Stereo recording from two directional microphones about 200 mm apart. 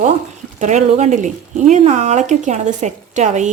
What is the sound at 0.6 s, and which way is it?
Speech, 35° right (ahead or behind).